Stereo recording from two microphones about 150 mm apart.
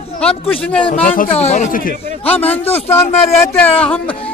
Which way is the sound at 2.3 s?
10° left (ahead or behind).